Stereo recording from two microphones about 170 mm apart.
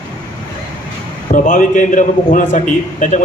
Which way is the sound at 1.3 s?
50° left (ahead or behind).